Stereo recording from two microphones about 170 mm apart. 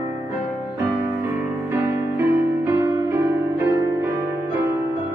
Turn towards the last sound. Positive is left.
turn(degrees=-20)  # may be behind; listen again after turning